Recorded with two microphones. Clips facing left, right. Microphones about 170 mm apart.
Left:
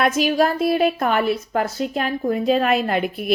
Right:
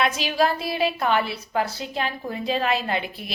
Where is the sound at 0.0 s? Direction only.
50° left (ahead or behind).